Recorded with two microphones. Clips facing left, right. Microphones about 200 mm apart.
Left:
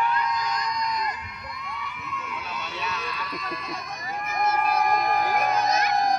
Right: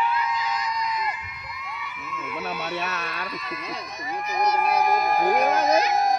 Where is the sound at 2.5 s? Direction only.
55° right (ahead or behind).